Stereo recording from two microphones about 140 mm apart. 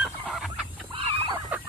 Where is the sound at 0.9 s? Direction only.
35° right (ahead or behind).